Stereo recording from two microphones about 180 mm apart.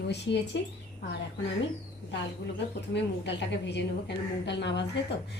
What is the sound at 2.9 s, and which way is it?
Speech, 75° left (ahead or behind).